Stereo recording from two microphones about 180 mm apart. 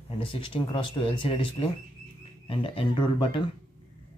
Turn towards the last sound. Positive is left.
turn(degrees=25)  # may be behind; listen again after turning